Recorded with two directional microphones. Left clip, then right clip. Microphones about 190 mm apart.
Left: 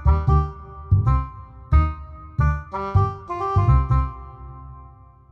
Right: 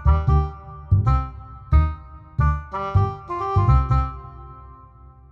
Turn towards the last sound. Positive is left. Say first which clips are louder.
# right 2 dB
turn(degrees=-15)  # may be behind; listen again after turning